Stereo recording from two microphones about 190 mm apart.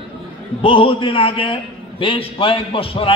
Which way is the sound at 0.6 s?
30° left (ahead or behind).